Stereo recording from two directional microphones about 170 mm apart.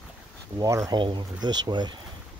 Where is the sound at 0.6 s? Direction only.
20° right (ahead or behind).